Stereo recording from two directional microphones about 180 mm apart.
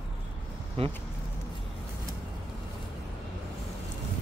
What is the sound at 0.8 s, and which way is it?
Speech, 35° right (ahead or behind).